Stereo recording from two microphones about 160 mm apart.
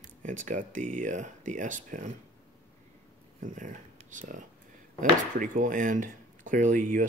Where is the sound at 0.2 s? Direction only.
50° right (ahead or behind).